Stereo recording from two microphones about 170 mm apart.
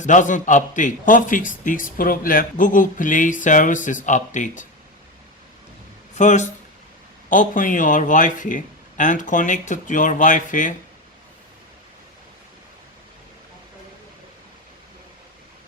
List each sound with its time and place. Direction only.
0.0 s a man's voice: 45° left (ahead or behind)
6.1 s a man's voice: 45° left (ahead or behind)